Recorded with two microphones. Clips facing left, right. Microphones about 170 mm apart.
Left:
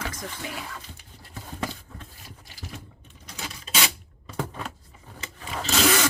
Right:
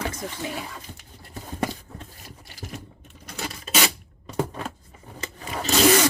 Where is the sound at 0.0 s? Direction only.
30° right (ahead or behind).